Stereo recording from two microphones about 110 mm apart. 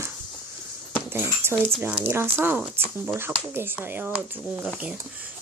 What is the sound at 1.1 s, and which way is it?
Speech, 20° right (ahead or behind).